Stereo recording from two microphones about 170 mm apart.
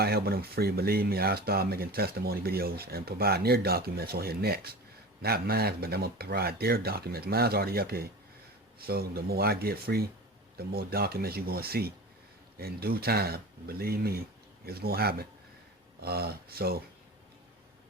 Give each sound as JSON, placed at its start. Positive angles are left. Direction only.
{"t": 0.0, "sound": "speech", "side_deg": -65}